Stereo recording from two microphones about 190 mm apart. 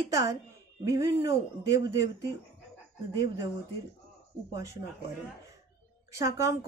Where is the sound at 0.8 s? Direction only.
15° right (ahead or behind).